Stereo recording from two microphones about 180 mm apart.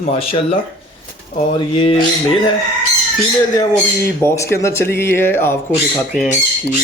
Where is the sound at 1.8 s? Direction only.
30° left (ahead or behind).